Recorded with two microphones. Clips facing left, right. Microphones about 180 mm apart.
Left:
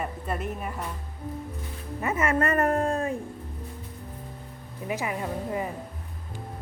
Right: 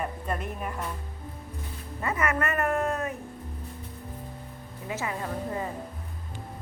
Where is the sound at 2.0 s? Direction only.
25° left (ahead or behind).